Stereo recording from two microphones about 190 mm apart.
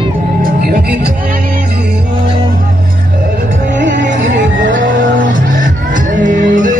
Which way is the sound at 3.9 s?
75° right (ahead or behind).